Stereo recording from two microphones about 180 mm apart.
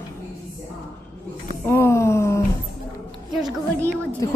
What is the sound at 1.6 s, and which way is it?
Speech, 15° left (ahead or behind).